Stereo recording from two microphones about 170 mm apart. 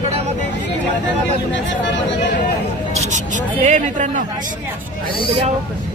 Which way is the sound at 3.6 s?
45° right (ahead or behind).